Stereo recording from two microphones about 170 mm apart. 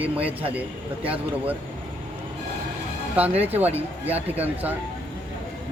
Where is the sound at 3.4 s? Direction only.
10° right (ahead or behind).